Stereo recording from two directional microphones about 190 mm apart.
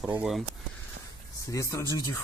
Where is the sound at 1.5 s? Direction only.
15° left (ahead or behind).